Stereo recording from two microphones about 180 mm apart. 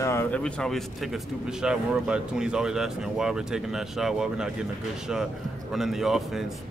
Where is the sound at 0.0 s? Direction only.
15° left (ahead or behind).